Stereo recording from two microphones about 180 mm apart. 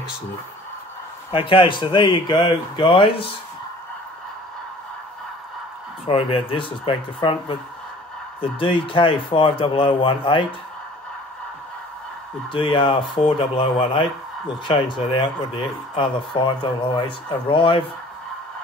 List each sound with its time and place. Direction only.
1.3 s speech: 30° left (ahead or behind)
6.0 s speech: 30° left (ahead or behind)
12.5 s speech: 30° left (ahead or behind)